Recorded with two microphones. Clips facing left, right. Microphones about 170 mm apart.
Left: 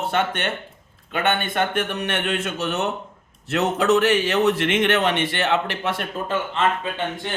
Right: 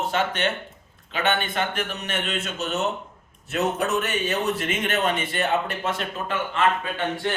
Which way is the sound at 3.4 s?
75° left (ahead or behind).